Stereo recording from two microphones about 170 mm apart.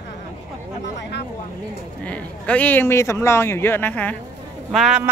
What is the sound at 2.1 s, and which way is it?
Speech, 10° left (ahead or behind).